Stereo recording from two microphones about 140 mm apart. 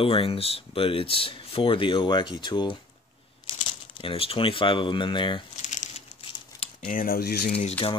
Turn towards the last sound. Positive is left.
turn(degrees=50)  # may be behind; listen again after turning